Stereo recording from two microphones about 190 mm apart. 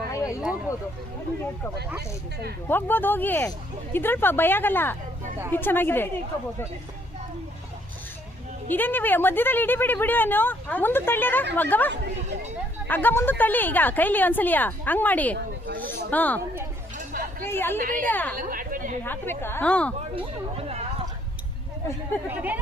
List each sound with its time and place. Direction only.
0.1 s a sound: 15° left (ahead or behind)
2.6 s speech: 10° left (ahead or behind)
8.7 s speech: 10° left (ahead or behind)
11.9 s speech: 65° right (ahead or behind)
12.9 s speech: 10° left (ahead or behind)
15.4 s speech: 50° right (ahead or behind)
16.0 s speech: 10° left (ahead or behind)
17.4 s speech: 10° left (ahead or behind)
17.7 s speech: 45° right (ahead or behind)
18.0 s speech: 10° left (ahead or behind)
18.3 s a sound: 45° right (ahead or behind)
19.0 s speech: 10° left (ahead or behind)
20.1 s speech: 30° right (ahead or behind)
22.3 s speech: 10° right (ahead or behind)